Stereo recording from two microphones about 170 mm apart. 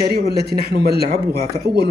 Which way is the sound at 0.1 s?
65° right (ahead or behind).